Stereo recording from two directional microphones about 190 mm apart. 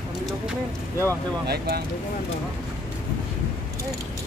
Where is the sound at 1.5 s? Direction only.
55° right (ahead or behind).